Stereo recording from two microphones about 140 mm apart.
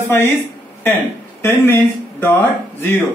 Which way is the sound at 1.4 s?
15° left (ahead or behind).